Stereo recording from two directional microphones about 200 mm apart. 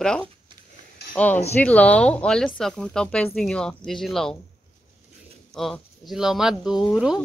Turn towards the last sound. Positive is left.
turn(degrees=-5)  # may be behind; listen again after turning